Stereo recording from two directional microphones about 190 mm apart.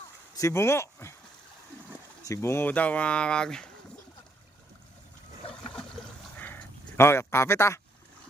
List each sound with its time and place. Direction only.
0.3 s speech: 15° left (ahead or behind)
2.2 s speech: 15° left (ahead or behind)
5.4 s water: 30° left (ahead or behind)
6.4 s a sound: 10° left (ahead or behind)